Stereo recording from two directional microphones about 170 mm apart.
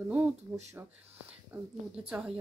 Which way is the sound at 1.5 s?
5° right (ahead or behind).